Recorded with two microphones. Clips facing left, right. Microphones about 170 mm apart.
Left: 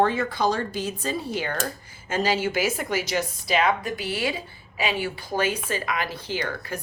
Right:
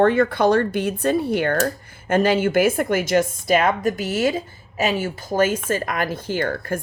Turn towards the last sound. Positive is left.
turn(degrees=-50)  # may be behind; listen again after turning